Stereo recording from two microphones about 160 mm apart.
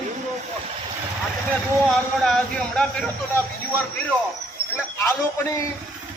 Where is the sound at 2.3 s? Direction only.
5° left (ahead or behind).